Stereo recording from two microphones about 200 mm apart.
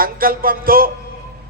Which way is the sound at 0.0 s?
45° right (ahead or behind).